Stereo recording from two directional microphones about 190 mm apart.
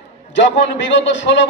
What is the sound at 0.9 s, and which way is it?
Speech, 75° left (ahead or behind).